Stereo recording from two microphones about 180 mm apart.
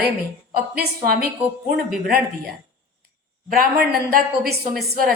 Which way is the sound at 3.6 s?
55° right (ahead or behind).